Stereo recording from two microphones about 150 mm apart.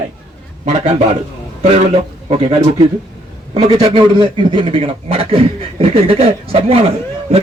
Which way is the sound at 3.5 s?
40° right (ahead or behind).